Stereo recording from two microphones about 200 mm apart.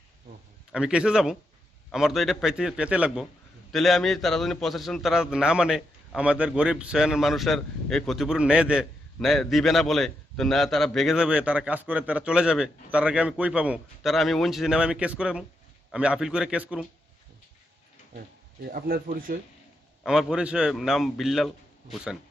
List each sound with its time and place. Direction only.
0.7 s a man's voice: 5° right (ahead or behind)
18.7 s speech: 45° right (ahead or behind)
20.1 s a man's voice: 5° right (ahead or behind)